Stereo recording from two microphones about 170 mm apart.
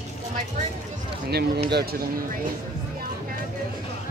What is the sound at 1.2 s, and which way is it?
Speech, 70° right (ahead or behind).